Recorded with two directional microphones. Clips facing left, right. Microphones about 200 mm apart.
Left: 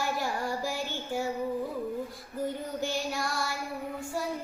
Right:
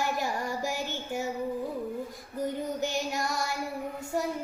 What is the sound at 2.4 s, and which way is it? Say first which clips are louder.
Child singing: right 2 dB; 20° right (ahead or behind).